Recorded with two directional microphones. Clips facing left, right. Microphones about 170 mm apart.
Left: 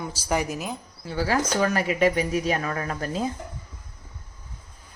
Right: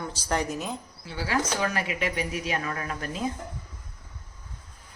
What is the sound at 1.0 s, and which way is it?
Speech, 45° left (ahead or behind).